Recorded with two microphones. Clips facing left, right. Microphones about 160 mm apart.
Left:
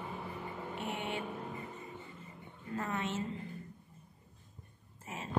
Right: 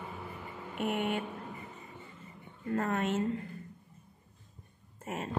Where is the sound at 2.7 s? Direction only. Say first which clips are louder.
Right 6 dB; 55° right (ahead or behind).